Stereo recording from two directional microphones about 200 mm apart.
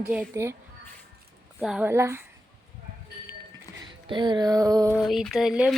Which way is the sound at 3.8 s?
25° right (ahead or behind).